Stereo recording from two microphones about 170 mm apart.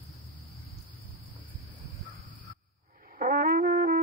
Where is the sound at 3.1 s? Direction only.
60° right (ahead or behind).